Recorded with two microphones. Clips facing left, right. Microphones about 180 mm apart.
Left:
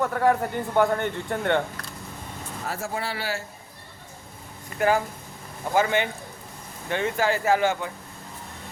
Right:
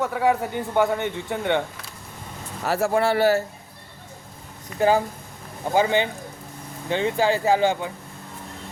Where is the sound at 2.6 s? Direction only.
70° right (ahead or behind); by 3.4 s 45° right (ahead or behind).